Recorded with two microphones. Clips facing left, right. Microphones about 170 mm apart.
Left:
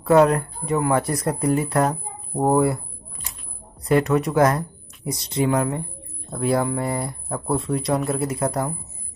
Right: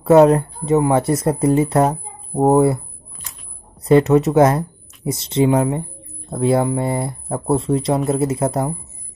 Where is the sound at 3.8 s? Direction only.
25° right (ahead or behind).